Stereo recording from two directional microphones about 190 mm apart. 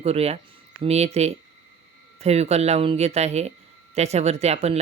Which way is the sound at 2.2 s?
35° right (ahead or behind).